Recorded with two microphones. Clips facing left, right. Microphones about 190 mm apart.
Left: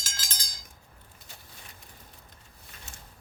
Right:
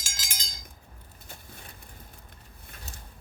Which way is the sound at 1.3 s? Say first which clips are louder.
Right 5 dB; 55° right (ahead or behind).